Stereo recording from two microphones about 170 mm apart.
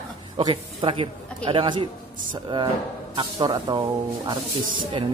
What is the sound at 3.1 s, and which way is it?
Speech, 25° right (ahead or behind).